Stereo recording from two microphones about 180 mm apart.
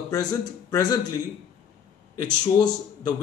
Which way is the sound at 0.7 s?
20° left (ahead or behind).